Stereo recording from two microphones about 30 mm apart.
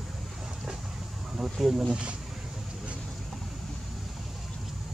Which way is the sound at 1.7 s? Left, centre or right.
Centre.